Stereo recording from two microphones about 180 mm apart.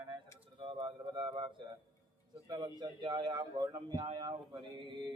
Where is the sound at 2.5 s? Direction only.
25° right (ahead or behind).